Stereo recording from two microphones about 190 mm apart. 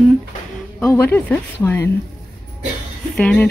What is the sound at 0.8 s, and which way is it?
Speech, 10° left (ahead or behind).